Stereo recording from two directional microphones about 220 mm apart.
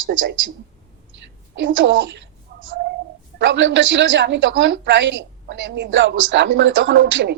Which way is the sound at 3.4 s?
55° right (ahead or behind).